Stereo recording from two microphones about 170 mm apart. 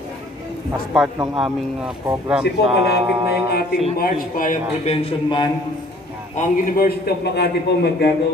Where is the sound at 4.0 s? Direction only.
50° left (ahead or behind).